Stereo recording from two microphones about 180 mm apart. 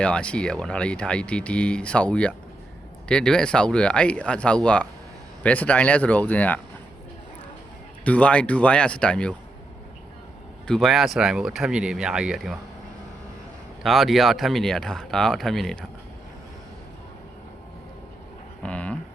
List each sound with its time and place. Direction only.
0.0 s speech: 5° left (ahead or behind)
8.0 s speech: 5° left (ahead or behind)
10.7 s speech: centre (ahead or behind)
13.8 s speech: centre (ahead or behind)
18.6 s a sound: 5° left (ahead or behind)